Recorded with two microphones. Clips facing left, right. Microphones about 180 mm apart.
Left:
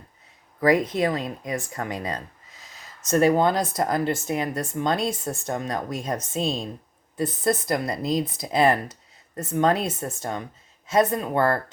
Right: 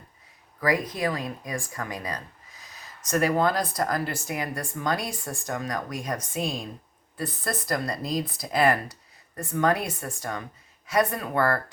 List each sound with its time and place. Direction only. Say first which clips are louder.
0.6 s speech: left 5 dB; 25° left (ahead or behind)